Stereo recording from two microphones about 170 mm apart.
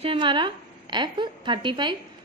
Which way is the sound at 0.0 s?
30° right (ahead or behind).